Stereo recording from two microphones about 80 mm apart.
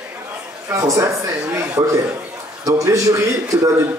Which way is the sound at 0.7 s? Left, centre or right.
Right.